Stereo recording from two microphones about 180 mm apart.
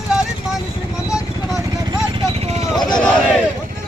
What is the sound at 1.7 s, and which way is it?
Vehicle, 20° right (ahead or behind).